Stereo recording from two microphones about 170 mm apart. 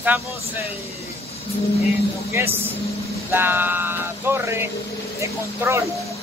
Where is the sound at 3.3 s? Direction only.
10° right (ahead or behind).